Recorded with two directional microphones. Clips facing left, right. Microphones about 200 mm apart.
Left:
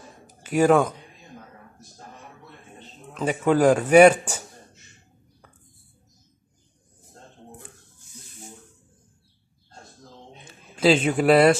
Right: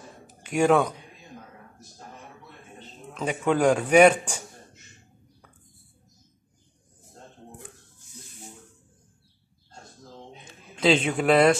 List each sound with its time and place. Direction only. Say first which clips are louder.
0.3 s speech: left 3 dB; 5° left (ahead or behind)
3.2 s a man's voice: left 3 dB; centre (ahead or behind)
10.4 s a sound: left 3 dB; 5° left (ahead or behind)